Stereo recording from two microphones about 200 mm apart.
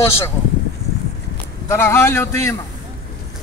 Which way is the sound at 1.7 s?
15° left (ahead or behind).